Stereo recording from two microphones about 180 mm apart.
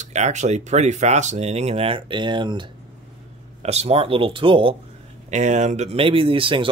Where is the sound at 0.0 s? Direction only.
40° right (ahead or behind).